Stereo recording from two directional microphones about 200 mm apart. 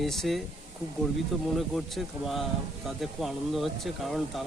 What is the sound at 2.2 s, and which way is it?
Speech, centre (ahead or behind).